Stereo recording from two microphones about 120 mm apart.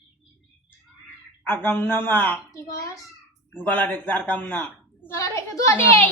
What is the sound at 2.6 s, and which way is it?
Speech, 25° left (ahead or behind).